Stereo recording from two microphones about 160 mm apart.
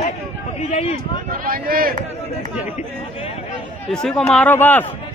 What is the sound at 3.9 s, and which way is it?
Speech, 5° left (ahead or behind).